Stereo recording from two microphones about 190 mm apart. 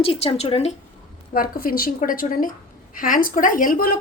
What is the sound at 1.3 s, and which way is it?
A woman's voice, 50° left (ahead or behind).